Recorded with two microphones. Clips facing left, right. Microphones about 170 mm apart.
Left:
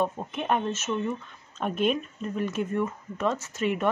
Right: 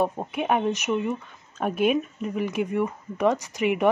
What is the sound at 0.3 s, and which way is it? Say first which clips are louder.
Speech: right 3 dB; 10° right (ahead or behind).